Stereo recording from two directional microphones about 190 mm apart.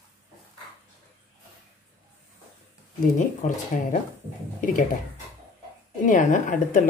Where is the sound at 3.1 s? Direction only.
40° left (ahead or behind).